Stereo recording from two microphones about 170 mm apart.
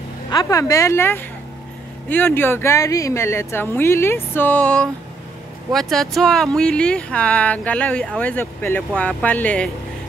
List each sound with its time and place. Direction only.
0.3 s a woman's voice: 20° left (ahead or behind)